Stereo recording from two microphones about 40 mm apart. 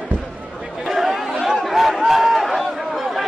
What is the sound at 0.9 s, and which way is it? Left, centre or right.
Chatter, centre.